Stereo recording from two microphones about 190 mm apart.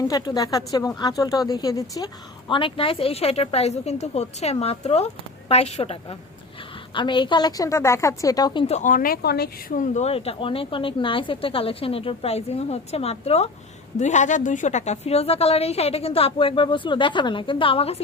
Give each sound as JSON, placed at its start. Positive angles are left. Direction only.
{"t": 0.1, "sound": "speech", "side_deg": 20}
{"t": 8.6, "sound": "speech", "side_deg": 40}